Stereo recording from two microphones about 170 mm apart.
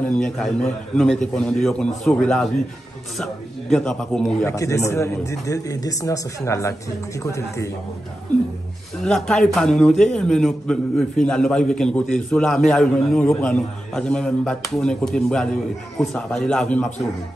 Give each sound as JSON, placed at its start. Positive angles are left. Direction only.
{"t": 0.2, "sound": "a man's voice", "side_deg": 5}
{"t": 3.7, "sound": "a man's voice", "side_deg": 5}
{"t": 4.5, "sound": "speech", "side_deg": 15}
{"t": 9.0, "sound": "a man's voice", "side_deg": 5}